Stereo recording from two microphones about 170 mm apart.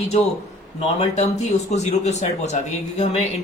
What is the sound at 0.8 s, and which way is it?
A man's voice, 40° left (ahead or behind).